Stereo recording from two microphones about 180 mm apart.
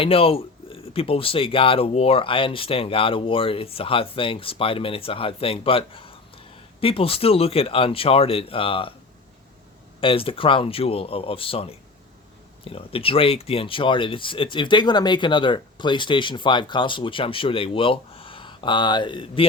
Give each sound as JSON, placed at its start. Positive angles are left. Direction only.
{"t": 0.0, "sound": "speech", "side_deg": 30}
{"t": 10.0, "sound": "speech", "side_deg": 30}